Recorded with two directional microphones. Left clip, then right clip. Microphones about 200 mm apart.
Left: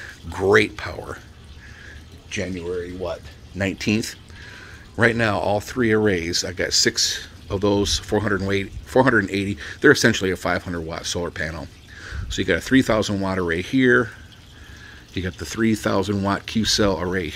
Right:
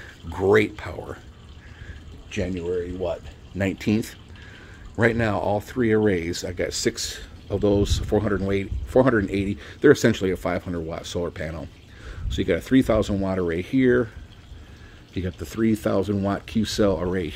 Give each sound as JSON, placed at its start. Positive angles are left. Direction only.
{"t": 0.0, "sound": "speech", "side_deg": 0}
{"t": 2.8, "sound": "speech", "side_deg": -20}
{"t": 3.5, "sound": "speech", "side_deg": -10}
{"t": 15.1, "sound": "speech", "side_deg": 0}